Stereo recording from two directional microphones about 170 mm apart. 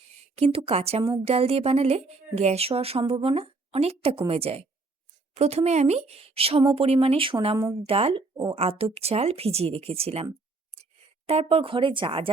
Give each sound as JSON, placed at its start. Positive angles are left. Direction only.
{"t": 0.3, "sound": "speech", "side_deg": -35}
{"t": 11.3, "sound": "speech", "side_deg": -35}